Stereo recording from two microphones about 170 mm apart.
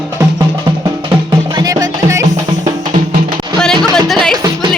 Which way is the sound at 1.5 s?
20° right (ahead or behind).